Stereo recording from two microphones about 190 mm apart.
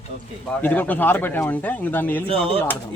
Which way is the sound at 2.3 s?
30° right (ahead or behind).